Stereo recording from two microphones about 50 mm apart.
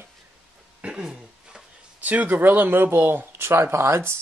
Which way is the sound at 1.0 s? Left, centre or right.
Centre.